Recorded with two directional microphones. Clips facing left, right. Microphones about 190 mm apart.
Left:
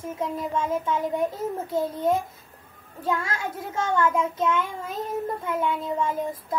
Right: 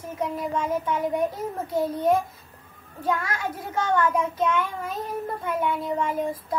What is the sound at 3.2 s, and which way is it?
Speech, 25° left (ahead or behind).